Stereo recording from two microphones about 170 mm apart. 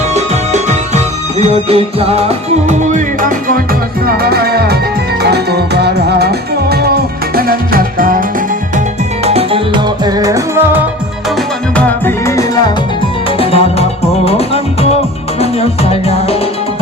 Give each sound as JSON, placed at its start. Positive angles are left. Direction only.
{"t": 0.1, "sound": "music", "side_deg": -40}
{"t": 4.0, "sound": "music", "side_deg": -65}
{"t": 7.3, "sound": "music", "side_deg": -60}
{"t": 9.2, "sound": "music", "side_deg": -35}
{"t": 10.0, "sound": "music", "side_deg": -20}
{"t": 11.8, "sound": "music", "side_deg": 10}
{"t": 13.4, "sound": "music", "side_deg": 35}